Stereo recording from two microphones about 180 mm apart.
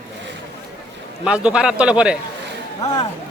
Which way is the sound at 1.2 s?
5° right (ahead or behind).